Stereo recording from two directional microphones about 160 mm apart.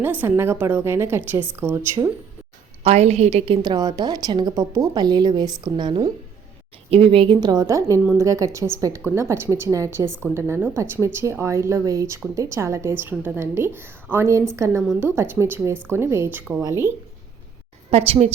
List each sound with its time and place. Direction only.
0.0 s a woman's voice: 10° right (ahead or behind)
2.8 s a woman's voice: 40° right (ahead or behind)
7.4 s a woman's voice: 25° right (ahead or behind)
17.9 s speech: 40° right (ahead or behind)